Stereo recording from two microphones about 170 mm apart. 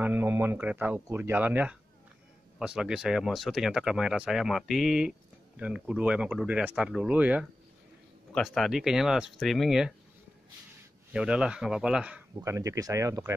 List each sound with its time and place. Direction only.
0.0 s speech: 10° right (ahead or behind)
11.1 s speech: 5° right (ahead or behind)
12.4 s speech: 15° right (ahead or behind)